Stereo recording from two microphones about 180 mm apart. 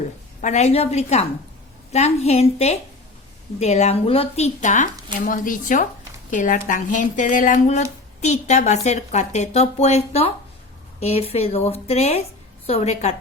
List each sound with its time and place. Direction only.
0.4 s a woman's voice: 40° left (ahead or behind)